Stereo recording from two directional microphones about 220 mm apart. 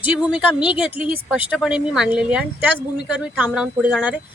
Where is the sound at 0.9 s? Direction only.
25° left (ahead or behind).